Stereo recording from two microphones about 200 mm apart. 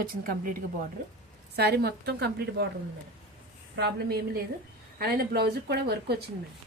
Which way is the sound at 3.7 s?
55° right (ahead or behind).